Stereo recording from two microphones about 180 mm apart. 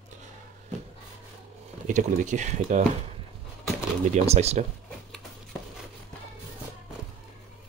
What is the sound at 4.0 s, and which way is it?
Speech, 40° right (ahead or behind).